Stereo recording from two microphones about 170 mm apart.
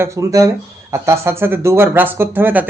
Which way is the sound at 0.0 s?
20° right (ahead or behind).